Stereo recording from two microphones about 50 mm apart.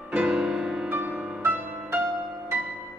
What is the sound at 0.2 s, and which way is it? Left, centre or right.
Music, centre.